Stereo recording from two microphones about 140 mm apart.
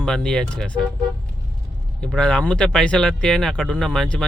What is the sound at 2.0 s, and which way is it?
Speech, 5° left (ahead or behind).